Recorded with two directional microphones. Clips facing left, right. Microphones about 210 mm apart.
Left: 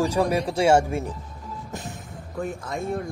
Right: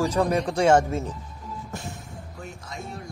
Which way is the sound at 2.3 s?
55° left (ahead or behind).